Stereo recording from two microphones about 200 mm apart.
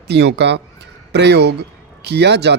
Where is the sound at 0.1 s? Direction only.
55° right (ahead or behind).